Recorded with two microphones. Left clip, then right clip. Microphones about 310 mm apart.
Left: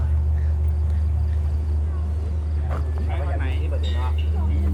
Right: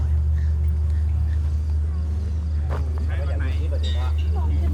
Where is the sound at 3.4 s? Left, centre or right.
Left.